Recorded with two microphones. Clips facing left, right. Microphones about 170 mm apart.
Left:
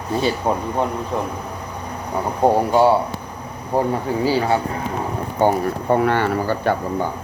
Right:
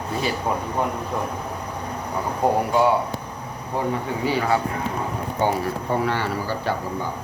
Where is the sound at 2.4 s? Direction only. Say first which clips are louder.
Left 4 dB; 30° left (ahead or behind).